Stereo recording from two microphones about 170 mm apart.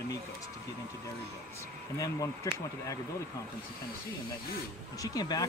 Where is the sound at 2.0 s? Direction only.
20° left (ahead or behind).